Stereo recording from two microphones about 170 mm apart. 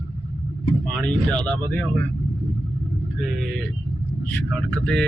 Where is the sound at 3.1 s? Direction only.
Centre (ahead or behind).